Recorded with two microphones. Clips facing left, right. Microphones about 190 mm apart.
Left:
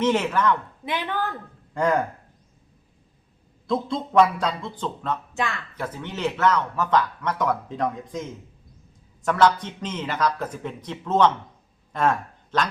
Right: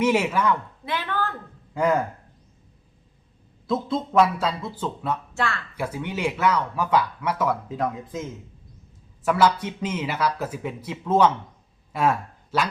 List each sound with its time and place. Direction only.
0.0 s speech: 10° right (ahead or behind)
0.9 s a woman's voice: 15° left (ahead or behind)
1.7 s speech: 5° right (ahead or behind)
3.7 s speech: 5° right (ahead or behind)
5.3 s speech: 15° left (ahead or behind)
5.7 s speech: 10° right (ahead or behind)
11.9 s a sound: 10° right (ahead or behind)